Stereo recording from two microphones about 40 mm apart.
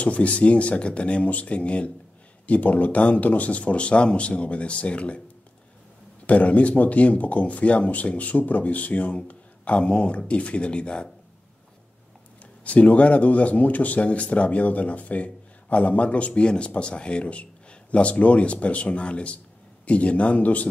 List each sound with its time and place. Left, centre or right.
0.0 s speech: left
6.2 s speech: left
12.6 s speech: left